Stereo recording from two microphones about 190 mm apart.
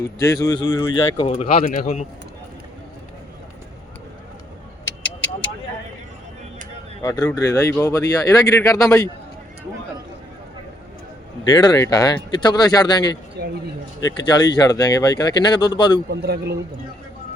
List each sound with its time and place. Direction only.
0.0 s speech: 20° left (ahead or behind); by 1.8 s 35° left (ahead or behind)
7.0 s speech: 15° left (ahead or behind)
11.4 s speech: 20° left (ahead or behind)
14.3 s speech: 20° left (ahead or behind)
16.0 s speech: 55° right (ahead or behind)